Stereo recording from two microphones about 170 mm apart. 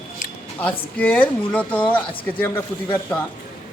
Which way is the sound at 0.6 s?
10° left (ahead or behind).